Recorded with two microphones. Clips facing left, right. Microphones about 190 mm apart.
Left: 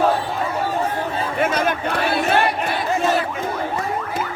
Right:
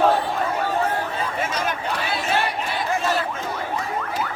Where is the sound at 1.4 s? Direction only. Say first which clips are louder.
Left 9 dB; 60° left (ahead or behind).